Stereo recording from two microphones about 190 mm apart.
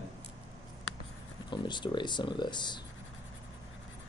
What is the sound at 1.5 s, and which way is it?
Speech, 25° left (ahead or behind).